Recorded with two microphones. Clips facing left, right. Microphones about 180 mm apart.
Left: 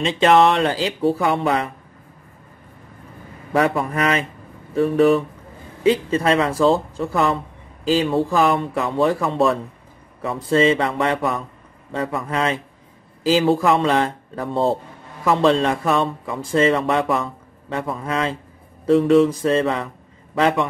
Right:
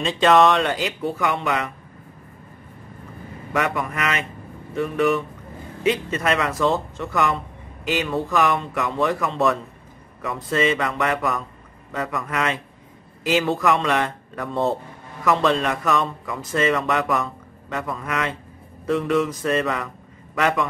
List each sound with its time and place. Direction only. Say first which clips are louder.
0.0 s speech: left 2 dB; 25° left (ahead or behind)
3.5 s speech: left 5 dB; 30° left (ahead or behind)